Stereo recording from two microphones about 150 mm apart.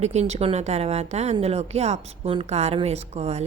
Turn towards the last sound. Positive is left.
turn(degrees=-45)  # may be behind; listen again after turning